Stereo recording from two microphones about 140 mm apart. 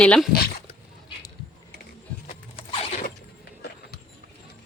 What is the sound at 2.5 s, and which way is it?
Mechanisms, 50° left (ahead or behind).